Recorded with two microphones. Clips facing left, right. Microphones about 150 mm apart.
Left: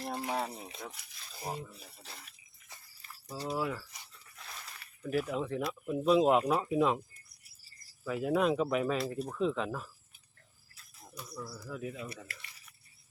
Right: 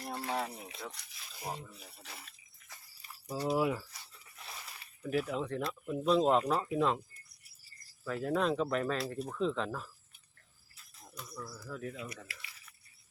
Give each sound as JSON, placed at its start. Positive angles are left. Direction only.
{"t": 0.1, "sound": "a sound", "side_deg": 20}
{"t": 0.9, "sound": "speech", "side_deg": 5}
{"t": 3.0, "sound": "a sound", "side_deg": -15}
{"t": 3.4, "sound": "speech", "side_deg": -20}
{"t": 5.0, "sound": "speech", "side_deg": 0}
{"t": 8.0, "sound": "speech", "side_deg": 5}
{"t": 11.0, "sound": "speech", "side_deg": 10}